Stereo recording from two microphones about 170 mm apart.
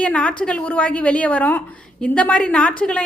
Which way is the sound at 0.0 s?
5° left (ahead or behind).